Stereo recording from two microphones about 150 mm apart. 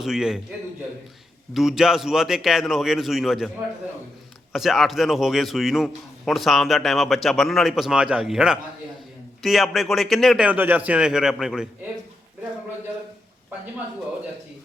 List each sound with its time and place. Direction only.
0.0 s a man's voice: 5° right (ahead or behind)
1.5 s a man's voice: centre (ahead or behind)
4.5 s a man's voice: centre (ahead or behind)